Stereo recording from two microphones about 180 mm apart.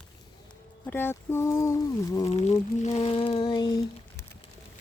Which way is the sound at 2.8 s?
35° left (ahead or behind).